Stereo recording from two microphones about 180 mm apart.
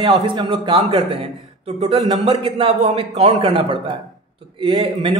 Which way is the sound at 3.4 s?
25° right (ahead or behind).